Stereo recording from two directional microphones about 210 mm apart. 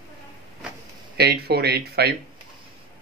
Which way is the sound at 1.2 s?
50° right (ahead or behind).